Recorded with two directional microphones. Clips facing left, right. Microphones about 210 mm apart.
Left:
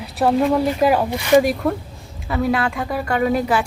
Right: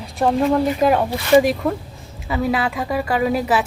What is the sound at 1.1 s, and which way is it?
Speech, 15° left (ahead or behind).